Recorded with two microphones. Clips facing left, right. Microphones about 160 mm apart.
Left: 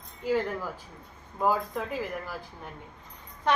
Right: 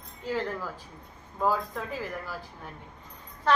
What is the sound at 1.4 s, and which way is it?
Speech, 15° left (ahead or behind).